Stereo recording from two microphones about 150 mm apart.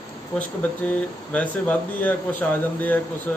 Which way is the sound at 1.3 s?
10° left (ahead or behind).